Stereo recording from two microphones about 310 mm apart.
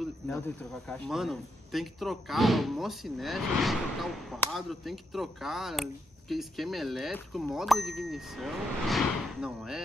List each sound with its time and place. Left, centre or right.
0.8 s speech: centre